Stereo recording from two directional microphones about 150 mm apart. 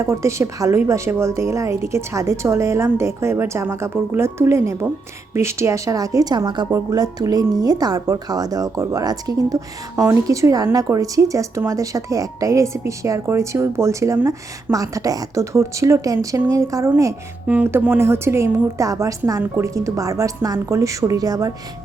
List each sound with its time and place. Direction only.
0.0 s speech: 20° right (ahead or behind)